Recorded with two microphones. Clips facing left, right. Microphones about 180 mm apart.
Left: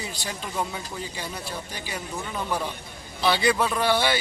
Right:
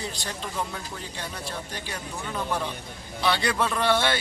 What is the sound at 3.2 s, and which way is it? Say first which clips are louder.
Speech: left 3 dB; 5° left (ahead or behind).